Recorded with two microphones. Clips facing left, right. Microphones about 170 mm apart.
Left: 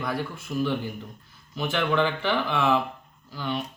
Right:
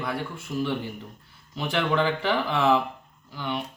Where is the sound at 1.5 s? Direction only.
35° right (ahead or behind).